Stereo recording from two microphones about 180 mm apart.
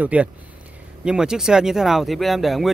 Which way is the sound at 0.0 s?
10° right (ahead or behind).